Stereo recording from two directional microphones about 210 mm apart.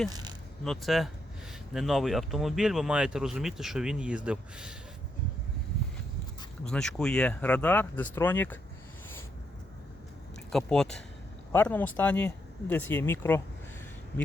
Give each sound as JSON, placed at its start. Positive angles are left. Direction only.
{"t": 0.1, "sound": "speech", "side_deg": -20}
{"t": 0.6, "sound": "speech", "side_deg": 0}
{"t": 6.7, "sound": "speech", "side_deg": 5}
{"t": 10.5, "sound": "speech", "side_deg": 5}